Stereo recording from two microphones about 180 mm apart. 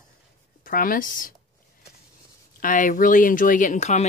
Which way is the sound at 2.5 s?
50° left (ahead or behind).